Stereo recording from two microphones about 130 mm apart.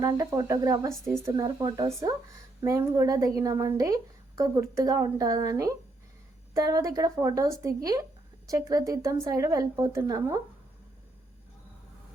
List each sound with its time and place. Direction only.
0.0 s a woman's voice: 25° right (ahead or behind)